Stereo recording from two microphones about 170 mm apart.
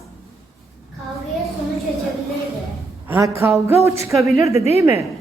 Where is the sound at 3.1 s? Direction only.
15° right (ahead or behind).